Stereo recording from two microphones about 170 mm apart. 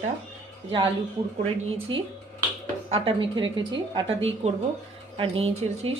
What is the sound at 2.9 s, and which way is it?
A woman's voice, 30° right (ahead or behind).